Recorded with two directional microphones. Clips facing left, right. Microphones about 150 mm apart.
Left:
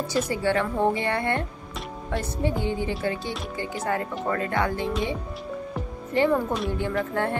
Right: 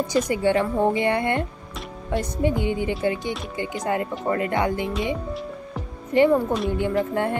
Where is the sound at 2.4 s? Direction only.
15° right (ahead or behind).